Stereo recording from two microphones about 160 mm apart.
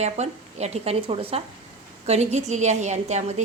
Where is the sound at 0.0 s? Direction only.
45° right (ahead or behind).